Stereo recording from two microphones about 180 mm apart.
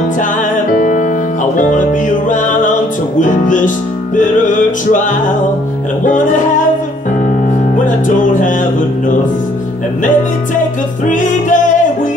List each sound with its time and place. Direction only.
0.7 s music: 45° left (ahead or behind)
6.0 s music: 45° left (ahead or behind)
7.7 s music: 45° left (ahead or behind)
11.1 s music: 45° left (ahead or behind)